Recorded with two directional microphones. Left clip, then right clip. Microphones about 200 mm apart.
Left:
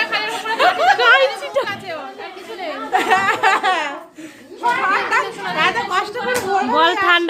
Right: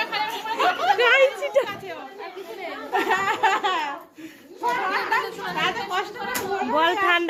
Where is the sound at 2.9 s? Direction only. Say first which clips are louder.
Left 7 dB; 15° left (ahead or behind).